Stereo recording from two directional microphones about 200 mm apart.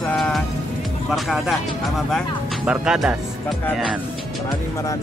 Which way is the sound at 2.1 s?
Centre (ahead or behind).